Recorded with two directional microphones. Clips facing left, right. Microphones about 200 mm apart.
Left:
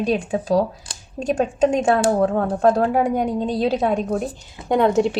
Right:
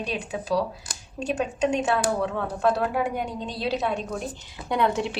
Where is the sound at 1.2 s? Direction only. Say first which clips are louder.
Left 6 dB; 50° left (ahead or behind).